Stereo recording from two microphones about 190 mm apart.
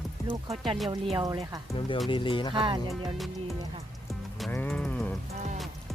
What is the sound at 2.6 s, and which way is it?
Speech, 25° right (ahead or behind).